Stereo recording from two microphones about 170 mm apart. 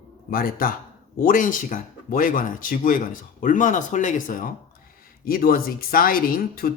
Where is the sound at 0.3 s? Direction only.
60° left (ahead or behind).